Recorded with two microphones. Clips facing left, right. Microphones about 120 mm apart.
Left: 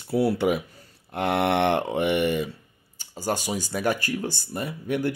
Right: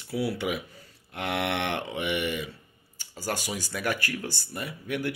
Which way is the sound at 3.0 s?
20° left (ahead or behind).